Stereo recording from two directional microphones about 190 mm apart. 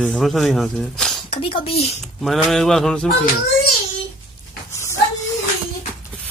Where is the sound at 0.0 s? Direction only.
5° left (ahead or behind).